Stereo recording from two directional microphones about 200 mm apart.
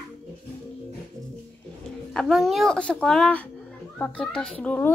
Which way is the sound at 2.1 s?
Centre (ahead or behind).